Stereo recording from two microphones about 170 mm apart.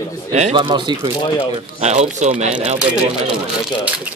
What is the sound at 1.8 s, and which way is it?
Speech, 40° right (ahead or behind).